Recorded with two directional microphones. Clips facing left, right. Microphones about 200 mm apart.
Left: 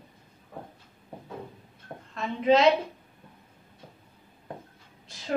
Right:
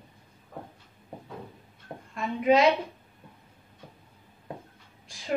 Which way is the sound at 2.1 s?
10° right (ahead or behind).